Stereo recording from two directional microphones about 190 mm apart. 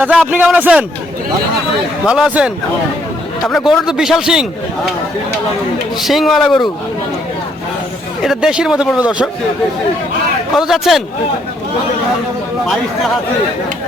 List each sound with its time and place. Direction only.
0.0 s speech: 5° right (ahead or behind)
2.0 s speech: 5° right (ahead or behind)
6.1 s speech: centre (ahead or behind)
8.2 s speech: 5° right (ahead or behind)
10.7 s speech: centre (ahead or behind)
12.6 s speech: centre (ahead or behind)